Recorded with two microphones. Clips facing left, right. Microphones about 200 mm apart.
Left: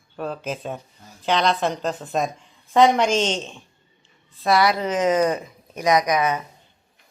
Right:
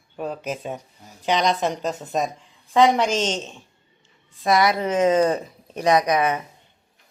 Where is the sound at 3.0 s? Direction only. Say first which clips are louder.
Left 2 dB; 40° right (ahead or behind).